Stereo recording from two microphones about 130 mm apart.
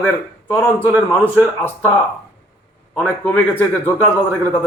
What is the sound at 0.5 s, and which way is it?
Speech, 15° left (ahead or behind).